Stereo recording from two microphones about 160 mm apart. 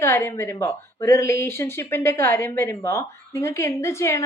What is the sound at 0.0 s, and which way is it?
Speech, 15° left (ahead or behind).